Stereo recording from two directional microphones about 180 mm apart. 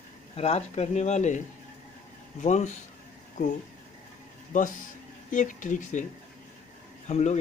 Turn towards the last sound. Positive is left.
turn(degrees=40)  # may be behind; listen again after turning